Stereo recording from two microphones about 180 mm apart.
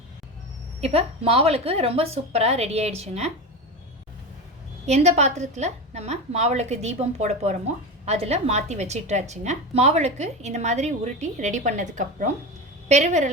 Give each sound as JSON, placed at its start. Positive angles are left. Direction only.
{"t": 0.8, "sound": "a woman's voice", "side_deg": -35}
{"t": 4.9, "sound": "a woman's voice", "side_deg": -40}